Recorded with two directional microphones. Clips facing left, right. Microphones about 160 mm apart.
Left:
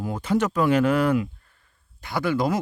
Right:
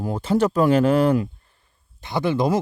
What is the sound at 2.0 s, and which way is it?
Speech, 20° right (ahead or behind).